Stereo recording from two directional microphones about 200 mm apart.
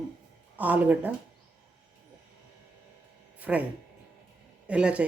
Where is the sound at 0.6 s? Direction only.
10° right (ahead or behind).